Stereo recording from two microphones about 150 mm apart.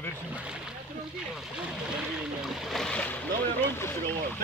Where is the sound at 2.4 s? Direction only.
Centre (ahead or behind).